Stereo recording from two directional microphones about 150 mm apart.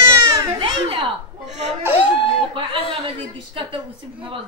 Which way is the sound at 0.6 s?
35° right (ahead or behind).